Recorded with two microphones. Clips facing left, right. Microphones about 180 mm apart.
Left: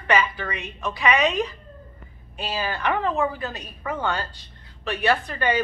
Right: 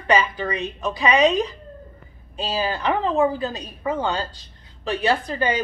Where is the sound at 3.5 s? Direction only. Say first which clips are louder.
Right 5 dB; 20° right (ahead or behind).